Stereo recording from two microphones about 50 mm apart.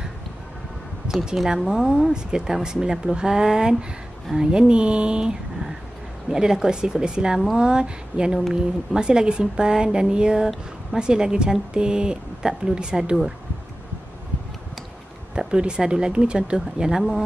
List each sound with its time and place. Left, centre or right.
1.2 s speech: centre
15.3 s speech: centre